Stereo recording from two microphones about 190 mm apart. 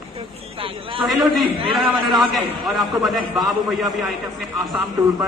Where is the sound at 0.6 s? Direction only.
25° right (ahead or behind).